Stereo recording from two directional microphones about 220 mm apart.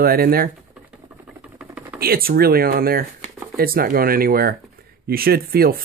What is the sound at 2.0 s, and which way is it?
Speech, 45° right (ahead or behind).